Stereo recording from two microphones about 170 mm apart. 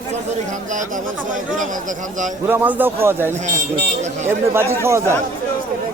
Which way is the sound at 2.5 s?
10° right (ahead or behind).